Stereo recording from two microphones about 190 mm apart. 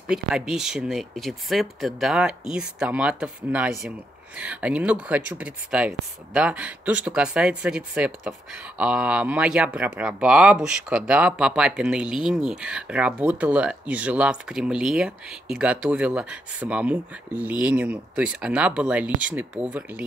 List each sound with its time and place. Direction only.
0.1 s speech: 5° right (ahead or behind)